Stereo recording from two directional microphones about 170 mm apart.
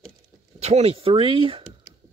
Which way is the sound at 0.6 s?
40° right (ahead or behind).